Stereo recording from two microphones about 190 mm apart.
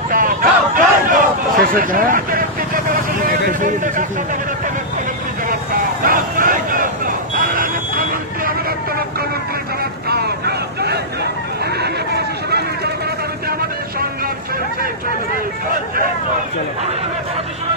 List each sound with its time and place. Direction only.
0.1 s a sound: 45° right (ahead or behind)
6.0 s fire alarm: 45° right (ahead or behind)
10.0 s vehicle: 55° right (ahead or behind)
13.5 s vehicle: 55° right (ahead or behind)